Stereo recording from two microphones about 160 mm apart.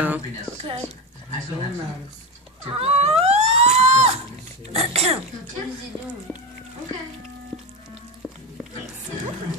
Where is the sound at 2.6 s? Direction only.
40° right (ahead or behind).